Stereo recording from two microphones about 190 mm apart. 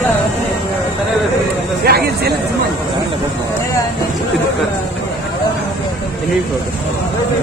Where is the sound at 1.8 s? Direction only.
55° right (ahead or behind).